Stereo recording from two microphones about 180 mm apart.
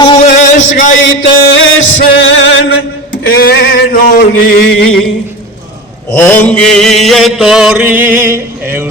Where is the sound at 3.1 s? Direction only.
55° left (ahead or behind).